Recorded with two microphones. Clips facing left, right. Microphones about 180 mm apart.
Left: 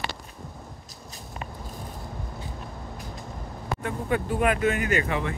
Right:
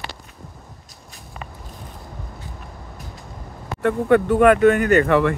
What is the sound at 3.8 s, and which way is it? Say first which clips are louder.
Speech: right 12 dB; 65° right (ahead or behind).